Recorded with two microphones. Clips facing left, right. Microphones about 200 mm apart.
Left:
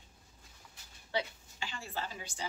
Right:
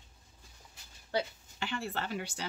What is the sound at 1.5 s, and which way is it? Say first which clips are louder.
Speech: right 5 dB; 65° right (ahead or behind).